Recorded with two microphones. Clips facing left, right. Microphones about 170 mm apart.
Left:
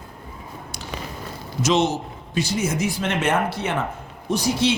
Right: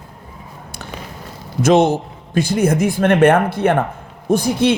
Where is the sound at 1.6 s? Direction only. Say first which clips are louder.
Right 7 dB; 55° right (ahead or behind).